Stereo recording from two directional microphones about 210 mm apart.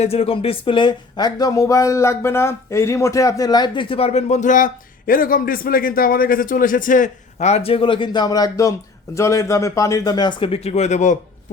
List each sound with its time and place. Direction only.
0.0 s speech: 30° left (ahead or behind)